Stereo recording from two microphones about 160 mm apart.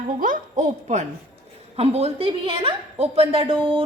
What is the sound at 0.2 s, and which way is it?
A woman's voice, 55° right (ahead or behind).